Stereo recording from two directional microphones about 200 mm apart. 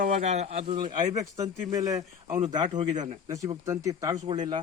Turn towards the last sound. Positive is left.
turn(degrees=-25)  # may be behind; listen again after turning